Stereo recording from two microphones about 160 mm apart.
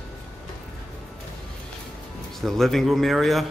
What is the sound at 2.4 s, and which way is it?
Speech, centre (ahead or behind).